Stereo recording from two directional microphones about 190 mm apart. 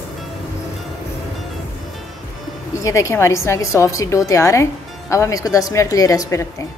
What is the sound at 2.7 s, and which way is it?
A woman's voice, 15° left (ahead or behind).